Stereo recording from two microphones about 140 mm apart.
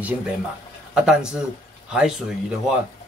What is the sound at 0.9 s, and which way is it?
Speech, 5° right (ahead or behind).